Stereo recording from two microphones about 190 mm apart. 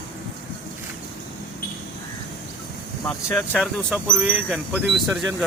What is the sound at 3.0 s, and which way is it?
Speech, 10° left (ahead or behind).